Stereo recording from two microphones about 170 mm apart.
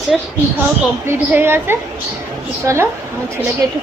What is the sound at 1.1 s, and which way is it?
A woman's voice, 15° right (ahead or behind).